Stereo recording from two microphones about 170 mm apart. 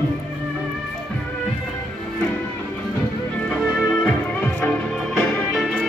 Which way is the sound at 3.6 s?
Centre (ahead or behind).